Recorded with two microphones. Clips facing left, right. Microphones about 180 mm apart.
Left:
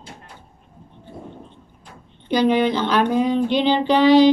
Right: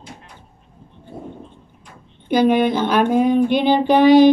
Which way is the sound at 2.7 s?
10° right (ahead or behind).